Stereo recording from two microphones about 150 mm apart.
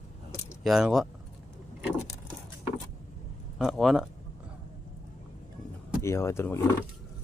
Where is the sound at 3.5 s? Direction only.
Centre (ahead or behind).